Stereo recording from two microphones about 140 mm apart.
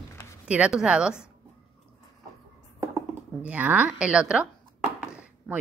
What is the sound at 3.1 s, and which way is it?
Speech, 10° right (ahead or behind).